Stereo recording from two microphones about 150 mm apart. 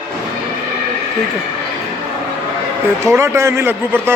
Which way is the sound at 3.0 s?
15° right (ahead or behind).